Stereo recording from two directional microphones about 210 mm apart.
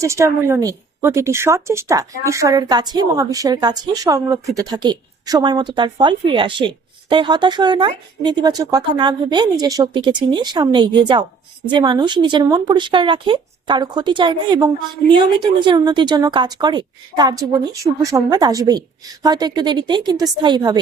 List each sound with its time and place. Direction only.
0.0 s a woman's voice: 15° right (ahead or behind)